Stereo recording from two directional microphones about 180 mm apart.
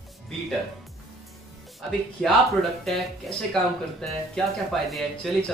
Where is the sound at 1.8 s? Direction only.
Centre (ahead or behind).